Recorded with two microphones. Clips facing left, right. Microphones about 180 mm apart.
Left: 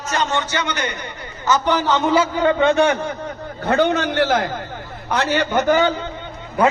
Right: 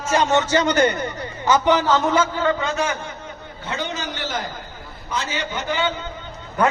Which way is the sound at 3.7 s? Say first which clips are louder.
Left 11 dB; 60° left (ahead or behind).